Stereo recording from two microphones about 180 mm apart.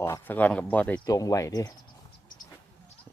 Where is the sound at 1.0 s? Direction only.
20° left (ahead or behind).